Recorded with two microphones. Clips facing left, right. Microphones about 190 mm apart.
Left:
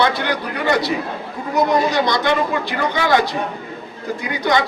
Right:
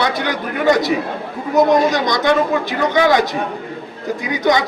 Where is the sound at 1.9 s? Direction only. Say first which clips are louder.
Right 2 dB; 15° right (ahead or behind).